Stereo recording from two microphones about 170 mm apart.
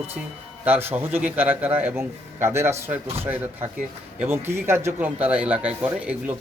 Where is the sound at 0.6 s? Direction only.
10° right (ahead or behind).